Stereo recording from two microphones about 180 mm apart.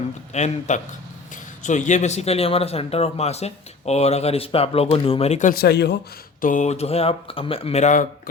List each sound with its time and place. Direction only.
0.3 s a man's voice: 40° left (ahead or behind); by 6.0 s 65° left (ahead or behind)
6.4 s a man's voice: 45° left (ahead or behind)